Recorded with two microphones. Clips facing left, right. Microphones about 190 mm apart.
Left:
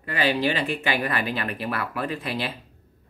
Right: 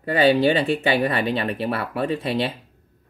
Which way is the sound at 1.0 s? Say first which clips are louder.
Right 5 dB; 30° right (ahead or behind).